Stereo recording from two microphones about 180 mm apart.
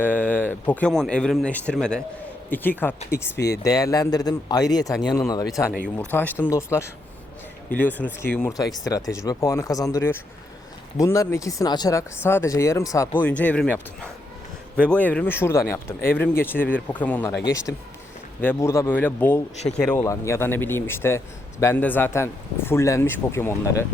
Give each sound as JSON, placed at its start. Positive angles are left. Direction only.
{"t": 0.0, "sound": "a man's voice", "side_deg": 10}
{"t": 14.8, "sound": "speech", "side_deg": 10}
{"t": 17.4, "sound": "speech", "side_deg": 20}
{"t": 20.0, "sound": "speech", "side_deg": 15}